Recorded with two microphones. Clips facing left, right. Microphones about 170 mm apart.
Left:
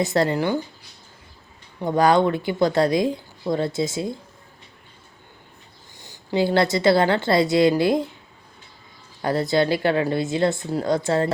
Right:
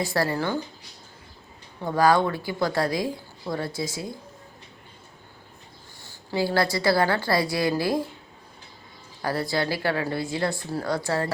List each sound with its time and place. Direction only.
0.0 s a woman's voice: 20° left (ahead or behind)
1.8 s a woman's voice: 20° left (ahead or behind)
6.0 s a woman's voice: 20° left (ahead or behind)
9.2 s a woman's voice: 20° left (ahead or behind)